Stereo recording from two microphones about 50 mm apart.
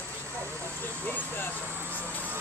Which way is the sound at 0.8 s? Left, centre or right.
Left.